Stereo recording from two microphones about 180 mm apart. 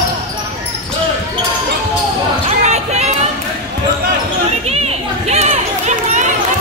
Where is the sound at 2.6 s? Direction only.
40° right (ahead or behind).